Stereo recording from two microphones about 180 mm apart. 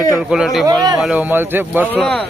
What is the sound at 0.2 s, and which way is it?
A man's voice, 5° right (ahead or behind).